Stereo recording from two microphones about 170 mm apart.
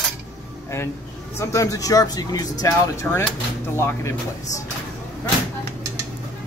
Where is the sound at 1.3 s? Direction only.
15° left (ahead or behind).